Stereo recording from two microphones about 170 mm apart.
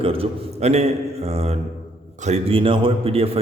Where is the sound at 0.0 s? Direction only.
35° right (ahead or behind).